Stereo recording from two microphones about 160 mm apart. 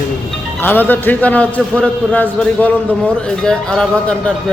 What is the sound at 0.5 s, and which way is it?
A man's voice, 10° left (ahead or behind).